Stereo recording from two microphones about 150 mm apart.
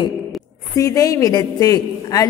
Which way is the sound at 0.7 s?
20° left (ahead or behind).